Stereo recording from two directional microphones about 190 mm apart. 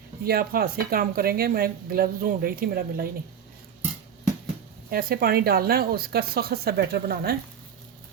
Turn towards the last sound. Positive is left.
turn(degrees=-55)  # may be behind; listen again after turning